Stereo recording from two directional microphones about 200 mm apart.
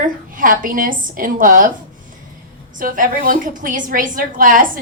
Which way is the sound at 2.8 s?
45° right (ahead or behind).